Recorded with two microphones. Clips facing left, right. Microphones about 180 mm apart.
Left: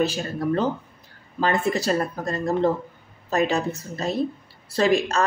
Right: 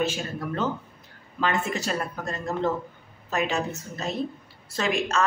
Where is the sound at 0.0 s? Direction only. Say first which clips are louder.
Left 4 dB; 35° left (ahead or behind).